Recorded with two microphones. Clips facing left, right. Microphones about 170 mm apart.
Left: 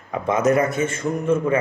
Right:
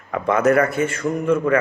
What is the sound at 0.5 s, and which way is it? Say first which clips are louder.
A man's voice: right 2 dB; 20° left (ahead or behind).